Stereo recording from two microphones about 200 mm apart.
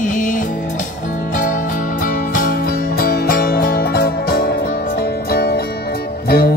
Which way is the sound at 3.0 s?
45° left (ahead or behind).